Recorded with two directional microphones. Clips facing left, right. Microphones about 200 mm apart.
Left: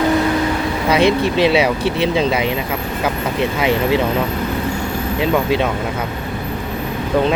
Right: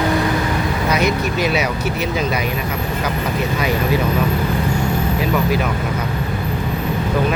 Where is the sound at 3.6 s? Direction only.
25° left (ahead or behind).